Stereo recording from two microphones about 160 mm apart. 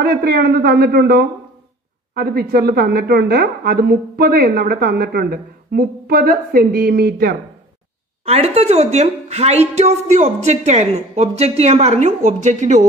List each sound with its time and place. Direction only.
0.0 s a woman's voice: 70° right (ahead or behind)
8.3 s a woman's voice: 40° right (ahead or behind)